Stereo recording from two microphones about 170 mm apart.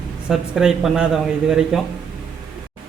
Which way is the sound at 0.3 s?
Centre (ahead or behind).